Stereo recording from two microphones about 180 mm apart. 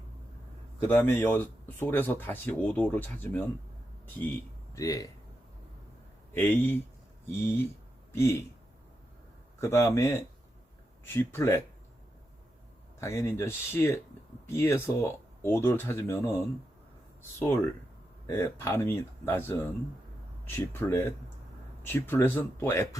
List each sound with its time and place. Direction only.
0.9 s speech: 10° left (ahead or behind)
6.3 s speech: 10° left (ahead or behind)
9.6 s speech: 15° left (ahead or behind)
13.0 s speech: 15° left (ahead or behind)
18.3 s speech: 15° left (ahead or behind)